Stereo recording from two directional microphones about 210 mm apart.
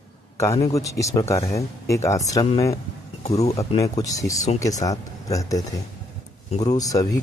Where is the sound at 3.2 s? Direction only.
30° left (ahead or behind).